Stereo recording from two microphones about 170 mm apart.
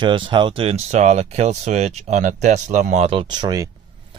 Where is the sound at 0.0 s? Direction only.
30° right (ahead or behind).